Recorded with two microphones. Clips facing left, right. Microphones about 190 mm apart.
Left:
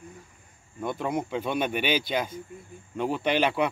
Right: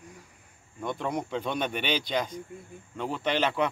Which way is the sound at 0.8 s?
5° left (ahead or behind).